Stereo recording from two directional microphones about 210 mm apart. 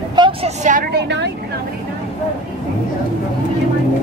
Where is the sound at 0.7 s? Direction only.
40° right (ahead or behind).